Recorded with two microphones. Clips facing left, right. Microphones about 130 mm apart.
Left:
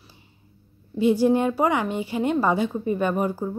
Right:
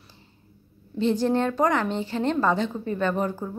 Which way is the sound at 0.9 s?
10° left (ahead or behind).